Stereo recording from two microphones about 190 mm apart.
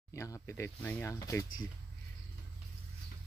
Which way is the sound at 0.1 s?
15° left (ahead or behind).